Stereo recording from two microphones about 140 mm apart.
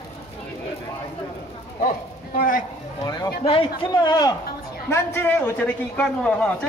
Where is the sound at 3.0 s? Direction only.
30° left (ahead or behind).